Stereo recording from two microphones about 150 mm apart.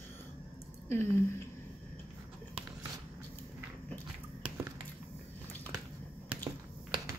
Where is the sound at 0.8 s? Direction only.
15° left (ahead or behind).